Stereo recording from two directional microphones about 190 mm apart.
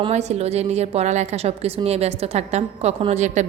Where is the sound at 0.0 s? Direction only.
35° right (ahead or behind).